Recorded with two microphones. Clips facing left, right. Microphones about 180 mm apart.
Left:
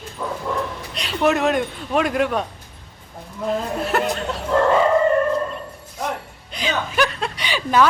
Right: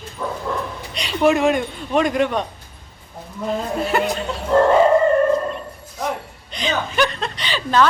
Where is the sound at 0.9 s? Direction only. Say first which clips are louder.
Right 2 dB; centre (ahead or behind).